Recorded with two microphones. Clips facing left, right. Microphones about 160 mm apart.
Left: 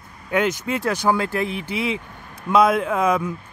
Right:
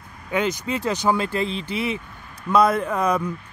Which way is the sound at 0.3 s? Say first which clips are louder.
Left 2 dB; 10° left (ahead or behind).